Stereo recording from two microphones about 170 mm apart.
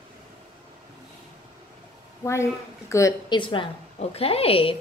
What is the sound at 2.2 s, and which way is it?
A woman's voice, 15° left (ahead or behind).